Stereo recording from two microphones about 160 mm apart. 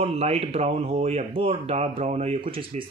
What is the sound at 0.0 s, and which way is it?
Speech, 40° right (ahead or behind).